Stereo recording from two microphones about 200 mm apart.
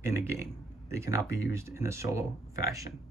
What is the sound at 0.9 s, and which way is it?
Speech, 15° right (ahead or behind).